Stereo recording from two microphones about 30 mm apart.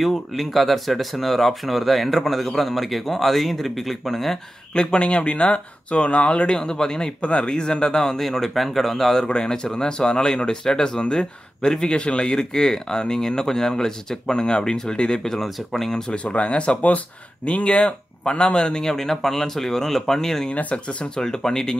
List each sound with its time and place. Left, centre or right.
0.0 s speech: centre
4.7 s speech: left
7.2 s speech: left
7.5 s speech: left
8.2 s speech: centre
9.2 s speech: left
12.0 s speech: left
12.4 s speech: left
14.3 s speech: left
15.4 s speech: centre
16.3 s speech: left
18.9 s speech: centre
20.7 s speech: left